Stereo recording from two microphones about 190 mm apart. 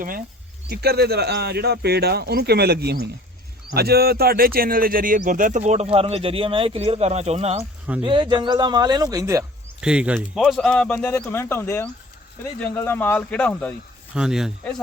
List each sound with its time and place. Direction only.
0.7 s speech: 55° right (ahead or behind); by 9.4 s 20° right (ahead or behind)
9.8 s speech: 5° right (ahead or behind)
14.2 s speech: 5° right (ahead or behind)